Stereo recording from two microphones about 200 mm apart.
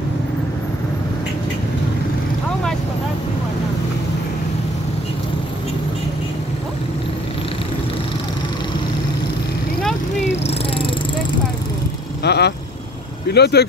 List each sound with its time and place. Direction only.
10.4 s a sound: 25° left (ahead or behind)
12.2 s vehicle: 55° left (ahead or behind)
13.3 s speech: 55° left (ahead or behind)